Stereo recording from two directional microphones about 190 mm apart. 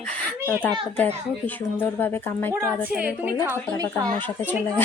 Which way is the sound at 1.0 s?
10° left (ahead or behind).